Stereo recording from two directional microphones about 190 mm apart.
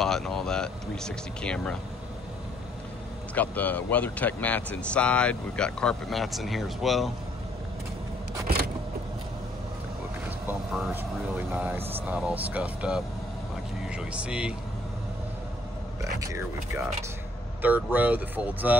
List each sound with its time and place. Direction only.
0.0 s speech: centre (ahead or behind)
3.3 s speech: 10° left (ahead or behind)
10.4 s speech: 10° right (ahead or behind)
16.0 s speech: 15° right (ahead or behind)